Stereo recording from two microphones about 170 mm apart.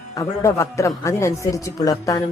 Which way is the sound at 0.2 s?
20° left (ahead or behind).